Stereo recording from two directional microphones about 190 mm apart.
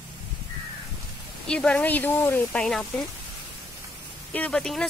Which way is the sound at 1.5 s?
5° left (ahead or behind).